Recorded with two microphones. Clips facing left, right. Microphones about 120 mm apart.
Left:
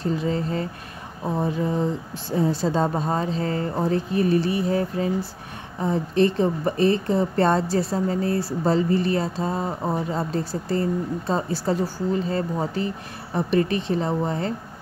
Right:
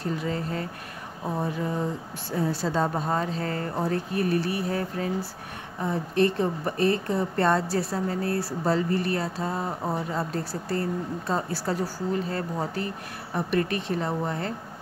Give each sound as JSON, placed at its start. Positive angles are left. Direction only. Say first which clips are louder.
{"t": 0.0, "sound": "speech", "louder": "left 5 dB", "side_deg": 25}